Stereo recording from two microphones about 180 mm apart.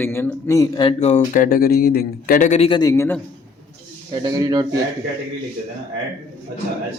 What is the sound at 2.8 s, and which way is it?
Speech, 15° left (ahead or behind).